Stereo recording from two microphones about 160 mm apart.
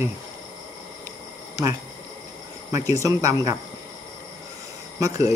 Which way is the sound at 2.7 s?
20° right (ahead or behind).